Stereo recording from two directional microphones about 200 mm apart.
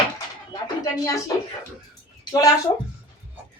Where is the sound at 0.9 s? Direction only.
15° left (ahead or behind).